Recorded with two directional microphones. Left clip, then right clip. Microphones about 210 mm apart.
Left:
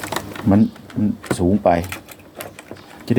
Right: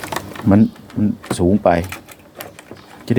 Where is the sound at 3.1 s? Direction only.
15° right (ahead or behind).